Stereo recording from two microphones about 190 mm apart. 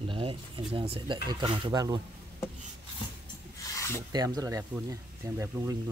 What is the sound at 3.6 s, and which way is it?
Filing, 15° left (ahead or behind).